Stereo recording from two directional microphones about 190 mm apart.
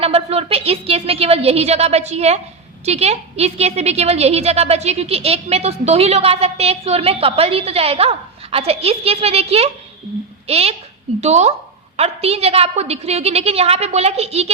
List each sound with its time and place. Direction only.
0.0 s a woman's voice: 30° right (ahead or behind)